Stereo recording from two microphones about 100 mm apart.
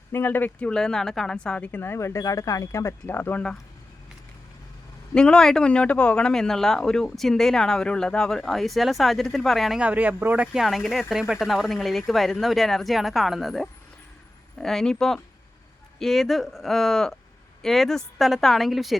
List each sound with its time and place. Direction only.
0.1 s a woman's voice: 20° left (ahead or behind)
0.7 s a woman's voice: 5° left (ahead or behind)
5.1 s speech: 10° left (ahead or behind)
9.8 s speech: 15° right (ahead or behind)